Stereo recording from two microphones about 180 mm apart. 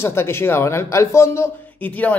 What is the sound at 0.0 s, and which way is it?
Speech, 15° left (ahead or behind).